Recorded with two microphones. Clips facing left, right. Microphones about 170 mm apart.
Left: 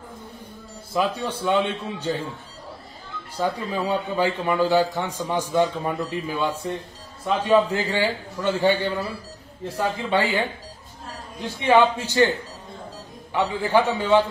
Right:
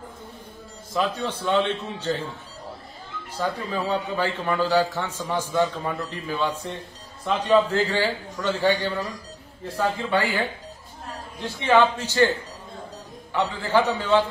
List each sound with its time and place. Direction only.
0.9 s a man's voice: 10° left (ahead or behind)
3.3 s a man's voice: 15° left (ahead or behind)
11.6 s a man's voice: 15° left (ahead or behind)
13.3 s a man's voice: 15° left (ahead or behind)